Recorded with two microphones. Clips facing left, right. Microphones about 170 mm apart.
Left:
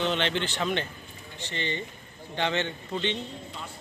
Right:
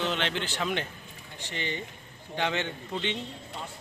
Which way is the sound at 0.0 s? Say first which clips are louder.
Left 3 dB; 5° right (ahead or behind).